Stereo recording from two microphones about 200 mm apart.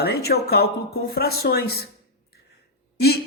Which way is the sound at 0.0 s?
50° left (ahead or behind).